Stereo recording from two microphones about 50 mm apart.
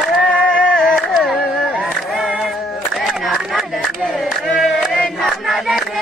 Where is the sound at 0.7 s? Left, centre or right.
Centre.